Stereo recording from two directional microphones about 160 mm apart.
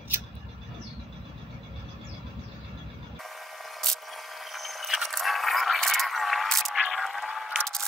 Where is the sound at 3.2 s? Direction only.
Centre (ahead or behind).